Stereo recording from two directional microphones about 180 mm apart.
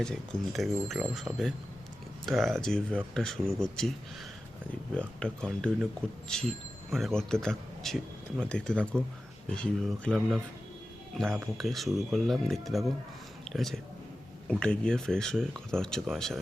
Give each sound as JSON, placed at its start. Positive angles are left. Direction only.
{"t": 0.0, "sound": "speech", "side_deg": 5}
{"t": 4.9, "sound": "speech", "side_deg": 5}
{"t": 11.5, "sound": "speech", "side_deg": 0}